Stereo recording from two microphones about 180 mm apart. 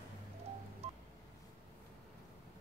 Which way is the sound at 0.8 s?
35° right (ahead or behind).